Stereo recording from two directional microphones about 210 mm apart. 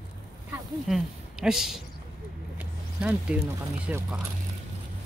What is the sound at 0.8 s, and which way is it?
Speech, centre (ahead or behind).